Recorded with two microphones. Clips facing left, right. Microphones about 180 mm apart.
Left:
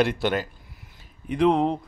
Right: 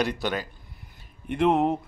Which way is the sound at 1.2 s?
Centre (ahead or behind).